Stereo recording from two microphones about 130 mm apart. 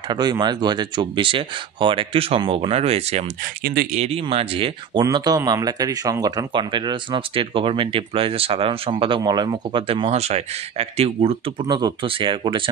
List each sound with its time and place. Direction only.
0.1 s speech: 35° right (ahead or behind); by 3.3 s 55° right (ahead or behind)
3.8 s speech: 65° right (ahead or behind)
4.1 s speech: 45° right (ahead or behind)
5.0 s speech: 30° right (ahead or behind); by 11.6 s 45° right (ahead or behind)
11.6 s speech: 30° right (ahead or behind)